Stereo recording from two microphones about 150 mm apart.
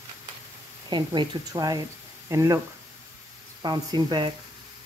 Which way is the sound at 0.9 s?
30° right (ahead or behind).